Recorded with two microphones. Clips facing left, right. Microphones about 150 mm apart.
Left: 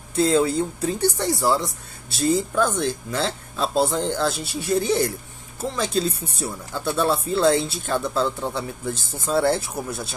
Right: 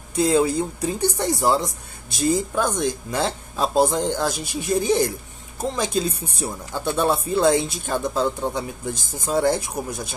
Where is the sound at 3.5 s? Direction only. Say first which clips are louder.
Right 2 dB; 45° right (ahead or behind).